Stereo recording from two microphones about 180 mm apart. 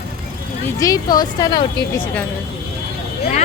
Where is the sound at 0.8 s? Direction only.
20° left (ahead or behind).